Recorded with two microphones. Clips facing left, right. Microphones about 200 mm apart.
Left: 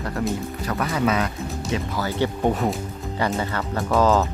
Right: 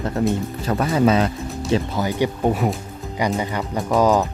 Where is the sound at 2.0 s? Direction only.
15° right (ahead or behind).